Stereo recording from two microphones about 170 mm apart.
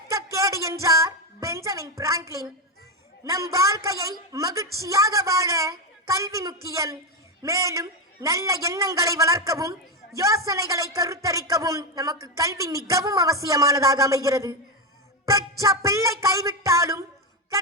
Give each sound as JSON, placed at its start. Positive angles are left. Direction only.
{"t": 0.1, "sound": "music", "side_deg": -20}
{"t": 3.2, "sound": "speech", "side_deg": -20}